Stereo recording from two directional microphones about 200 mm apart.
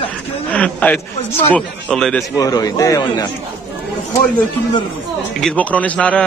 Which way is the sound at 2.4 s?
20° left (ahead or behind).